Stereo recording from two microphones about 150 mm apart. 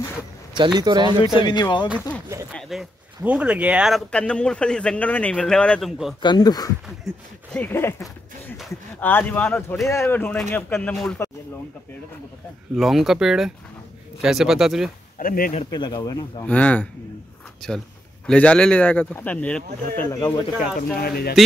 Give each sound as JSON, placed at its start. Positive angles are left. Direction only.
{"t": 0.6, "sound": "speech", "side_deg": -30}
{"t": 1.2, "sound": "speech", "side_deg": 30}
{"t": 2.5, "sound": "speech", "side_deg": 0}
{"t": 6.2, "sound": "speech", "side_deg": 30}
{"t": 7.5, "sound": "a man's voice", "side_deg": 15}
{"t": 12.7, "sound": "speech", "side_deg": 0}
{"t": 15.1, "sound": "speech", "side_deg": 70}
{"t": 15.7, "sound": "speech", "side_deg": 30}
{"t": 16.4, "sound": "a man's voice", "side_deg": 10}
{"t": 21.0, "sound": "speech", "side_deg": 90}